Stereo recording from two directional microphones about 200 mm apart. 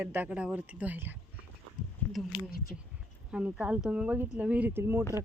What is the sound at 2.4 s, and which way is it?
Speech, 50° left (ahead or behind).